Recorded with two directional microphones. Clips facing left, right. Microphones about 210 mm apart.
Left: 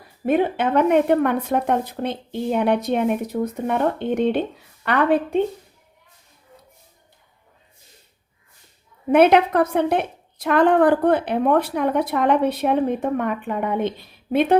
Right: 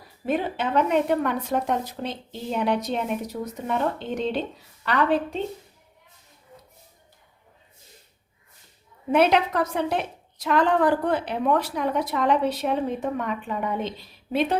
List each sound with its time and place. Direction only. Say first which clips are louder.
0.3 s a woman's voice: left 6 dB; 55° left (ahead or behind)
9.1 s a woman's voice: left 6 dB; 55° left (ahead or behind)